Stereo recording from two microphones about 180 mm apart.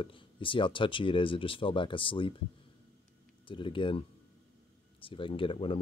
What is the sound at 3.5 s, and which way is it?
Speech, 30° left (ahead or behind).